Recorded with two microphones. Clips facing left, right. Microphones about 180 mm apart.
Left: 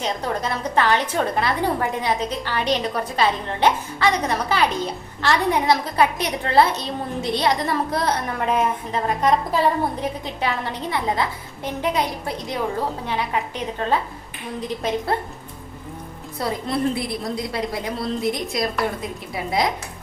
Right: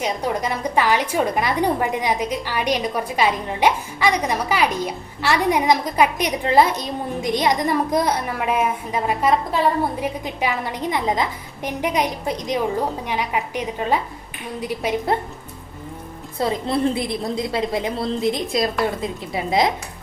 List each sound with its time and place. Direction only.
0.0 s a woman's voice: 10° right (ahead or behind)
16.4 s a woman's voice: 25° right (ahead or behind)